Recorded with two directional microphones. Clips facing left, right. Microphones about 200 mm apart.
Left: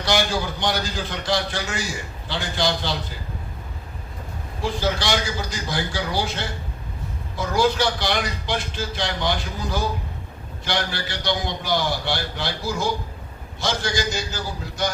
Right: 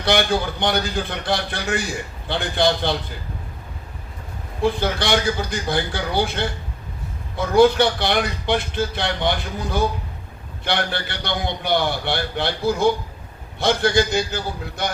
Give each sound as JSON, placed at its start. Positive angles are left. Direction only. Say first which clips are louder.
{"t": 0.0, "sound": "a man's voice", "louder": "right 3 dB", "side_deg": -60}
{"t": 4.6, "sound": "a man's voice", "louder": "right 3 dB", "side_deg": -60}